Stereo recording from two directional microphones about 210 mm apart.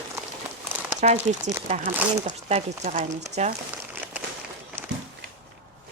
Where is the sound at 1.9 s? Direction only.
10° right (ahead or behind).